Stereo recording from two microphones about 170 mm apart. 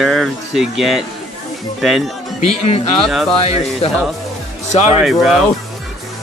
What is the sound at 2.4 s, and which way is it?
Speech, 35° left (ahead or behind).